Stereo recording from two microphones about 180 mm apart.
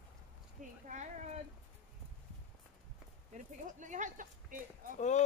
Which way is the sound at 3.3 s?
45° right (ahead or behind).